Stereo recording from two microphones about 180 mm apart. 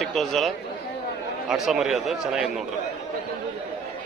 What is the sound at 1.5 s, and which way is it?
A man's voice, centre (ahead or behind).